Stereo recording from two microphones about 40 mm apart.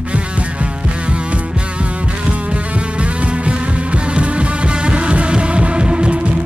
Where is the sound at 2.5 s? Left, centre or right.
Right.